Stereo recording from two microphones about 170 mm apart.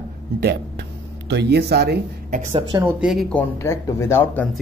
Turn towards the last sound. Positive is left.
turn(degrees=15)  # may be behind; listen again after turning